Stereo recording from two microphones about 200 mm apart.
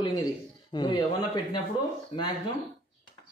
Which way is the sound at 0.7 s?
20° left (ahead or behind).